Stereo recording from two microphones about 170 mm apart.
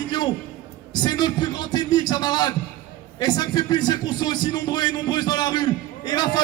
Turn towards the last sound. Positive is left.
turn(degrees=25)  # may be behind; listen again after turning